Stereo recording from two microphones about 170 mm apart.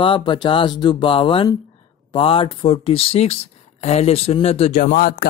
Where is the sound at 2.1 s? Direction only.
30° left (ahead or behind).